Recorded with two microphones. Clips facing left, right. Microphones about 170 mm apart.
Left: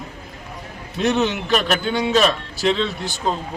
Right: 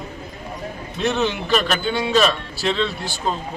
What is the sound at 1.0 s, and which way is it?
Speech, 20° left (ahead or behind).